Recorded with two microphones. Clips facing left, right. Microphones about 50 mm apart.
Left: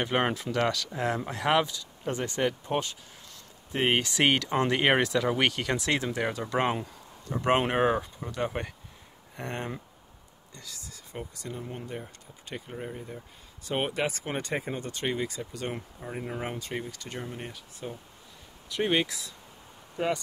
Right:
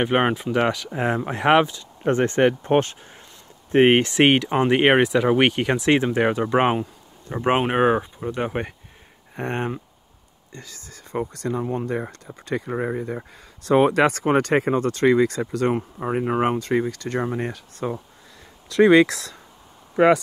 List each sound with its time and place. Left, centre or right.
0.0 s speech: right
11.3 s speech: right
18.7 s speech: right